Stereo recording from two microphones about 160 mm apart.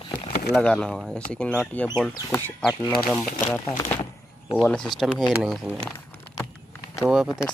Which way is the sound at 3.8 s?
30° left (ahead or behind).